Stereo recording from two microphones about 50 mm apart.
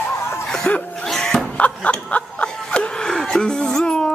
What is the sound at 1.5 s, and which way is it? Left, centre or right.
Snicker, left.